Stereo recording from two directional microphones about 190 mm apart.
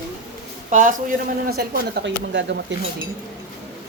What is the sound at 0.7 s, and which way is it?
A man's voice, 40° right (ahead or behind).